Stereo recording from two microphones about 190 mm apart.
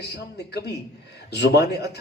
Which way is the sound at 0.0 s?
60° left (ahead or behind).